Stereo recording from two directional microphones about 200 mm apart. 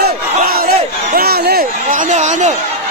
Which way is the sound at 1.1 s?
50° right (ahead or behind).